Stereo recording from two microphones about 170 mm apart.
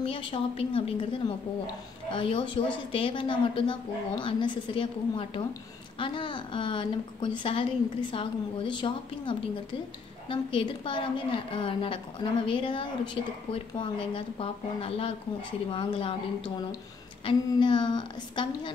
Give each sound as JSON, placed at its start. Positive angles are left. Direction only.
{"t": 0.0, "sound": "a woman's voice", "side_deg": 30}